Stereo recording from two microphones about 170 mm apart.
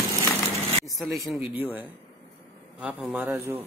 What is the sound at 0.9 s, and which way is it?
Speech, centre (ahead or behind).